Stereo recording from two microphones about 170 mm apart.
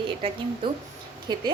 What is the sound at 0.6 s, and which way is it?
Speech, 30° right (ahead or behind).